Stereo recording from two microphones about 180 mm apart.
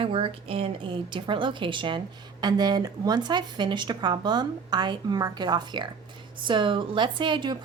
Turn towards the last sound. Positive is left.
turn(degrees=-25)  # may be behind; listen again after turning